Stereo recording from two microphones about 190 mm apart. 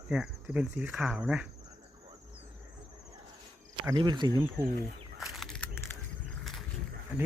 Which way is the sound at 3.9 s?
25° right (ahead or behind).